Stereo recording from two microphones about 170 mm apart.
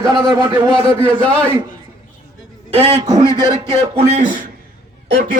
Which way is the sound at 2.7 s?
35° right (ahead or behind).